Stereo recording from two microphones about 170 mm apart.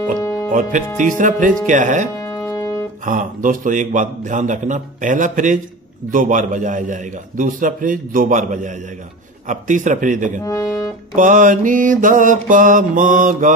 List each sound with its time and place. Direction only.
0.2 s music: 20° left (ahead or behind)
0.5 s a man's voice: 50° right (ahead or behind)
2.1 s music: 20° left (ahead or behind)
3.1 s a man's voice: 50° right (ahead or behind)
10.4 s speech: 20° left (ahead or behind)
11.1 s a man's voice: 50° right (ahead or behind)